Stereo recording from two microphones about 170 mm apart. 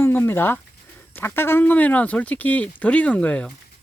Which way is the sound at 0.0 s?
15° left (ahead or behind).